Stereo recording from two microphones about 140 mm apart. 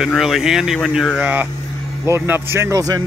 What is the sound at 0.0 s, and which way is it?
Speech, centre (ahead or behind).